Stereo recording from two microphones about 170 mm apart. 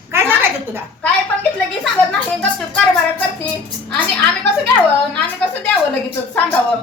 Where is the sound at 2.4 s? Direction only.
5° left (ahead or behind).